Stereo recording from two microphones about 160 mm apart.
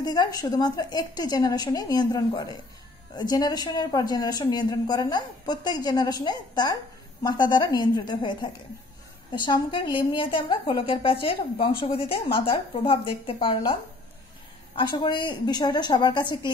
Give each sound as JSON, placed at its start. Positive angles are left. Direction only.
{"t": 0.0, "sound": "a woman's voice", "side_deg": 25}
{"t": 14.8, "sound": "speech", "side_deg": 30}